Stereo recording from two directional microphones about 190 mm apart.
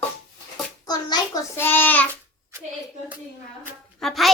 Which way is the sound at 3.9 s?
Centre (ahead or behind).